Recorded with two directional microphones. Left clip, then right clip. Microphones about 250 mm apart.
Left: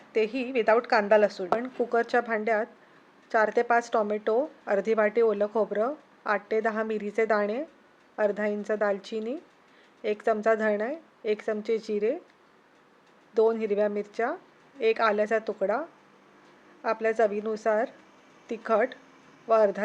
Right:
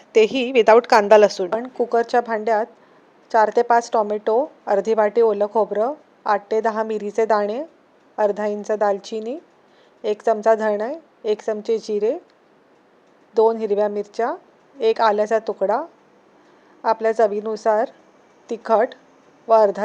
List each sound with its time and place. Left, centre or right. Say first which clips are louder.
0.1 s a woman's voice: right 11 dB; right
1.5 s a woman's voice: right 7 dB; centre
13.3 s a woman's voice: right 7 dB; centre